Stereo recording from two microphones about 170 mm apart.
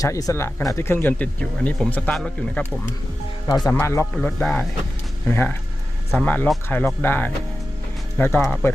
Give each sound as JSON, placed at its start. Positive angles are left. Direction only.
{"t": 0.0, "sound": "speech", "side_deg": 20}
{"t": 3.4, "sound": "speech", "side_deg": 25}
{"t": 8.4, "sound": "speech", "side_deg": 10}